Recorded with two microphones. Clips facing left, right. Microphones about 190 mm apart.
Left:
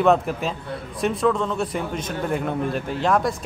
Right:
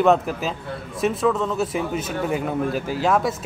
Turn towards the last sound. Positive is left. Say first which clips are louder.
# right 1 dB
turn(degrees=-5)  # may be behind; listen again after turning